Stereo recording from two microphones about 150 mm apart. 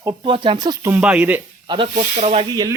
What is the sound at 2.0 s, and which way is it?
Speech, 50° right (ahead or behind).